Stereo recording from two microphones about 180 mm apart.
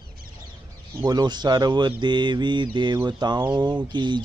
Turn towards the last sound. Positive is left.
turn(degrees=-25)  # may be behind; listen again after turning